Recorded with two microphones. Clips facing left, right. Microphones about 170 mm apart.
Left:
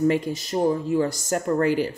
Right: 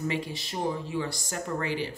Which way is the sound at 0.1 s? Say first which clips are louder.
Left 9 dB; 45° left (ahead or behind).